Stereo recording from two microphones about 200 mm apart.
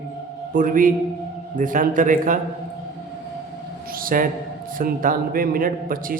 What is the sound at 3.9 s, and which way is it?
A man's voice, 45° right (ahead or behind).